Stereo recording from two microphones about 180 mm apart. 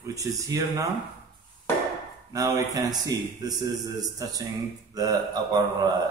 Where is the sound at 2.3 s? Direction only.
20° right (ahead or behind).